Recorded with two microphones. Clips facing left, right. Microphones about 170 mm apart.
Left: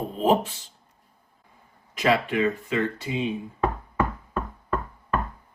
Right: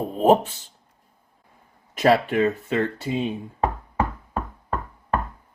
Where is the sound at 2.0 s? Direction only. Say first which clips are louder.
Right 4 dB; 40° right (ahead or behind).